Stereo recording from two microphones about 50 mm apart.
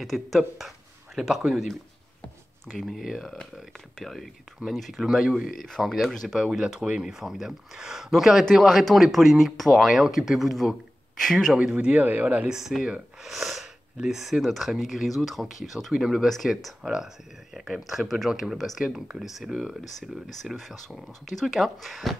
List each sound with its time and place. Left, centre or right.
0.0 s speech: centre
0.6 s a sound: centre
1.5 s speech: centre
2.8 s speech: centre
5.7 s speech: centre
11.5 s speech: centre
12.0 s speech: right
12.4 s speech: centre